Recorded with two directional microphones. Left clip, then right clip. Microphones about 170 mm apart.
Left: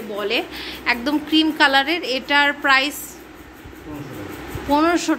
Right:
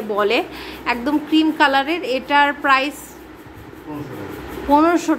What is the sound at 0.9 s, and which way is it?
A woman's voice, 5° right (ahead or behind).